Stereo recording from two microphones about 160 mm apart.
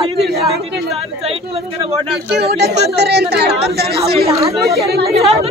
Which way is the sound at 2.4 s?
90° right.